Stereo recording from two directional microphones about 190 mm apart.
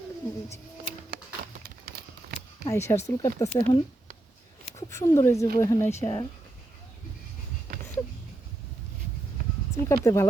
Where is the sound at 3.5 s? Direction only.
25° left (ahead or behind).